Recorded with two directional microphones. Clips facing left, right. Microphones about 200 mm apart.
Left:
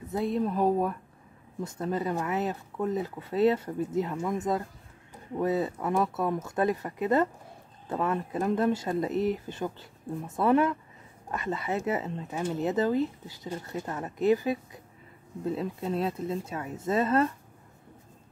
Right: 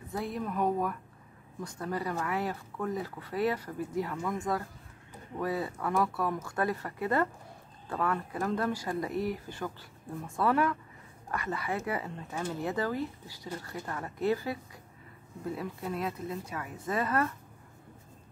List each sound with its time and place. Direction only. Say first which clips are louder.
0.1 s speech: left 6 dB; 25° left (ahead or behind)